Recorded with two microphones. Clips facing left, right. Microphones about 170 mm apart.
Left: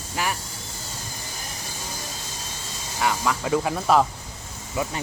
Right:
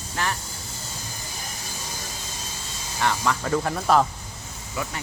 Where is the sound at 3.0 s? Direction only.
5° left (ahead or behind).